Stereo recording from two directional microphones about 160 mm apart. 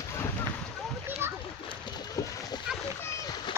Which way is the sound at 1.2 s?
15° right (ahead or behind).